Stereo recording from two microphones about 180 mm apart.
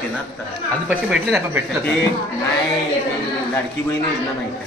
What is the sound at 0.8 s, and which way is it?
Speech, 10° right (ahead or behind).